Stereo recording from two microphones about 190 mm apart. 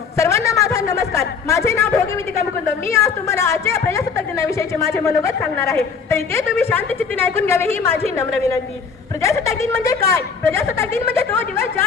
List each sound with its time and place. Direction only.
0.2 s a man's voice: 15° left (ahead or behind)